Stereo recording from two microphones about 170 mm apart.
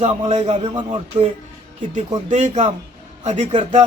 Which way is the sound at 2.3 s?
45° right (ahead or behind).